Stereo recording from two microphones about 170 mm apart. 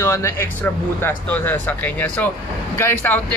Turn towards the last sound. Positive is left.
turn(degrees=10)  # may be behind; listen again after turning